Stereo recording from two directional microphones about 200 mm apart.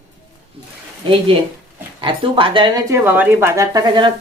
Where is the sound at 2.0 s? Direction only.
25° right (ahead or behind).